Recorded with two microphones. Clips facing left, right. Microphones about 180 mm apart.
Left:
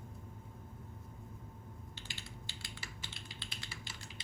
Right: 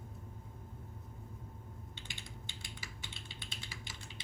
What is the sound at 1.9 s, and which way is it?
Typing, 20° right (ahead or behind).